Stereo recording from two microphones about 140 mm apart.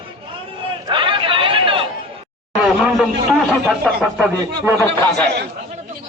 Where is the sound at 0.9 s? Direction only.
35° right (ahead or behind).